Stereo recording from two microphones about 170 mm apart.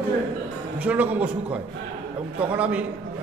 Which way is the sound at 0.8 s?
10° right (ahead or behind).